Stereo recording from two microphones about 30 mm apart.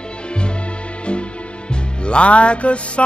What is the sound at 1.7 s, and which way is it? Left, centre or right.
Music, left.